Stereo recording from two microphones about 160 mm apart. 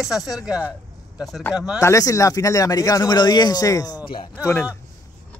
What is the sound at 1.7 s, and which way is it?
Speech, 20° left (ahead or behind).